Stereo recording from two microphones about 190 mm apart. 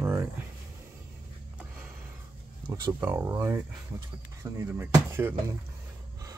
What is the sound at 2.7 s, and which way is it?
Speech, 15° right (ahead or behind).